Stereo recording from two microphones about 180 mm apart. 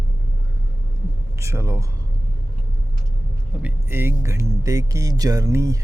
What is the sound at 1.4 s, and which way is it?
Speech, 15° right (ahead or behind).